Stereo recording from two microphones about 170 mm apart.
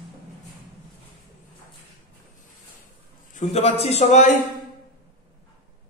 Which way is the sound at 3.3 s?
35° left (ahead or behind).